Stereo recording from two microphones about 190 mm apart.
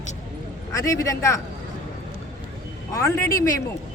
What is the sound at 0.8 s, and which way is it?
Speech, 15° left (ahead or behind).